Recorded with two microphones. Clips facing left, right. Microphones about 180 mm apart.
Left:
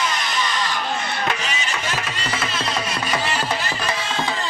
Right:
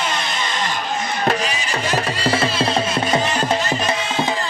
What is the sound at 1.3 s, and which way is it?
Music, 35° right (ahead or behind).